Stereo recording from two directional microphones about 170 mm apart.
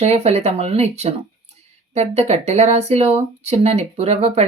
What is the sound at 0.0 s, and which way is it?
Speech, 40° right (ahead or behind).